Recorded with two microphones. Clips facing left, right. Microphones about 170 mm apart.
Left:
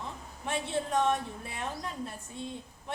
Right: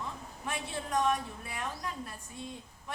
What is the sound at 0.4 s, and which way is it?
A woman's voice, 25° left (ahead or behind).